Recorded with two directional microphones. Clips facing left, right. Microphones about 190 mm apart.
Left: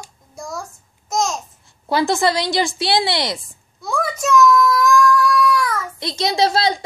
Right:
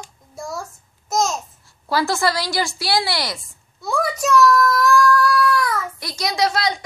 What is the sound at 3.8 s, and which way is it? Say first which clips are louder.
Child singing: even; centre (ahead or behind).